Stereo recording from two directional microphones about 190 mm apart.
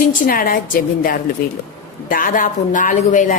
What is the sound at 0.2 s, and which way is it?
Speech, 50° left (ahead or behind).